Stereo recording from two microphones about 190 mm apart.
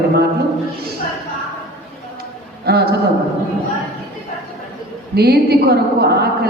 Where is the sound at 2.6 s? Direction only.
55° right (ahead or behind).